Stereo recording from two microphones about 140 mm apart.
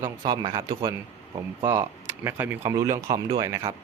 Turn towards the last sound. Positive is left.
turn(degrees=-25)  # may be behind; listen again after turning